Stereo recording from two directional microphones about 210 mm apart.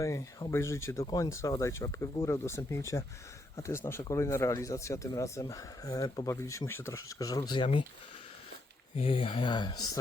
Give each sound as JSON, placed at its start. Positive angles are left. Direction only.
{"t": 0.0, "sound": "speech", "side_deg": 15}
{"t": 9.0, "sound": "speech", "side_deg": 25}